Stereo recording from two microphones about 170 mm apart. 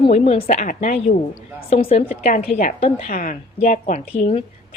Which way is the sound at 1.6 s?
35° left (ahead or behind).